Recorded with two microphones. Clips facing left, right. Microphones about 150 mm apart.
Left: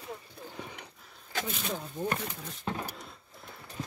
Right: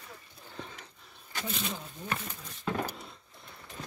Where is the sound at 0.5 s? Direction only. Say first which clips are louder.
Right 1 dB; 15° left (ahead or behind).